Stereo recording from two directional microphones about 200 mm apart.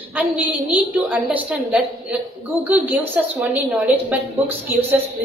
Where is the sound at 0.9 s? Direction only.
10° right (ahead or behind).